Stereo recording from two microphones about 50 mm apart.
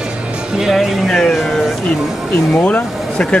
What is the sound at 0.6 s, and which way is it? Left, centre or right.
Speech, centre.